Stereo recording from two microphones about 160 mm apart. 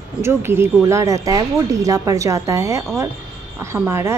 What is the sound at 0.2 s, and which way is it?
A woman's voice, 15° right (ahead or behind).